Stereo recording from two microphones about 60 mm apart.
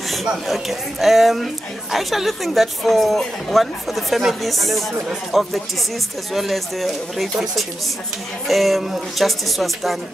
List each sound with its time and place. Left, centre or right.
0.1 s speech: centre